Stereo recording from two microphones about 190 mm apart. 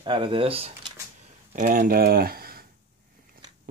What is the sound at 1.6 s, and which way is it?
Speech, 45° right (ahead or behind).